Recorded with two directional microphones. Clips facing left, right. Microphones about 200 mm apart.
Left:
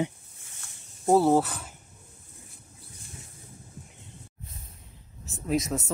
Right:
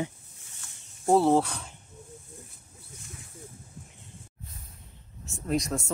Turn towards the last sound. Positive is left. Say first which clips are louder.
# left 1 dB
turn(degrees=0)  # may be behind; listen again after turning